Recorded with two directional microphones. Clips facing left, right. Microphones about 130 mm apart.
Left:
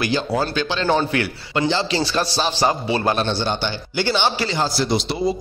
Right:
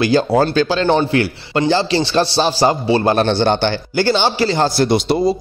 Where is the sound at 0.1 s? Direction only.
50° right (ahead or behind).